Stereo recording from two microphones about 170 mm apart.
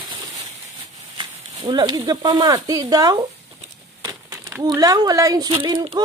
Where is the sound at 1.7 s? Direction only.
25° right (ahead or behind).